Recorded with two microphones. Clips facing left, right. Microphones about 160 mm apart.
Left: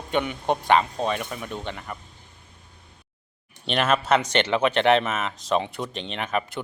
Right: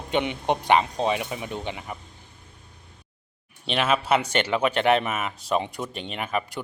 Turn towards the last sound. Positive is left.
turn(degrees=-5)  # may be behind; listen again after turning